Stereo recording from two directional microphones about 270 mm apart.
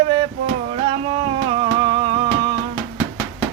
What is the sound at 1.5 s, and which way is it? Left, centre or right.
Music, centre.